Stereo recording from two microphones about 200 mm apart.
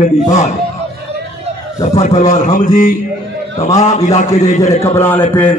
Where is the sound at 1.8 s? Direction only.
35° left (ahead or behind).